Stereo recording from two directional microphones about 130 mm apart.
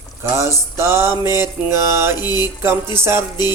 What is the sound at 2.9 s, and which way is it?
Music, 20° right (ahead or behind).